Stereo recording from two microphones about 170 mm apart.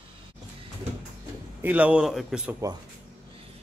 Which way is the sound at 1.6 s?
10° right (ahead or behind).